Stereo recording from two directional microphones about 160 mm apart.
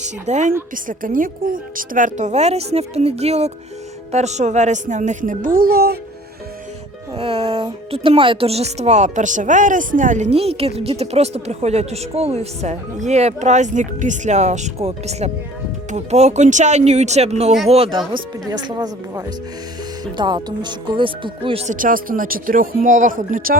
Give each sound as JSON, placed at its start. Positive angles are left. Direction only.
{"t": 0.0, "sound": "a woman's voice", "side_deg": -45}
{"t": 0.9, "sound": "a woman's voice", "side_deg": -60}
{"t": 7.2, "sound": "a woman's voice", "side_deg": -35}
{"t": 18.5, "sound": "speech", "side_deg": -25}
{"t": 21.8, "sound": "speech", "side_deg": -60}